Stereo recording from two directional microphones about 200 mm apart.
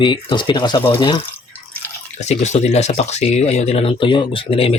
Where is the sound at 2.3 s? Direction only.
35° left (ahead or behind).